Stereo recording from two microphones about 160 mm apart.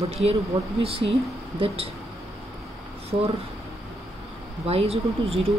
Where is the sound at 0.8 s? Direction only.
35° right (ahead or behind).